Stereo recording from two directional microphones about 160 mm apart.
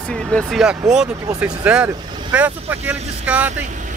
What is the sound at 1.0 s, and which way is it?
Speech, 20° right (ahead or behind).